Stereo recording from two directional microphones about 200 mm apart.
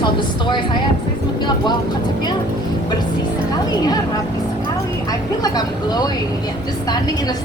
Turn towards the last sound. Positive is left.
turn(degrees=20)  # may be behind; listen again after turning